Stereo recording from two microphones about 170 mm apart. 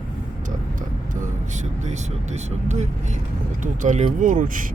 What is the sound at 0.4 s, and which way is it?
Speech, 50° right (ahead or behind).